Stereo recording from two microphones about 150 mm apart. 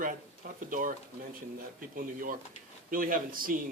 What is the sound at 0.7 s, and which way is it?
Speech, 60° right (ahead or behind).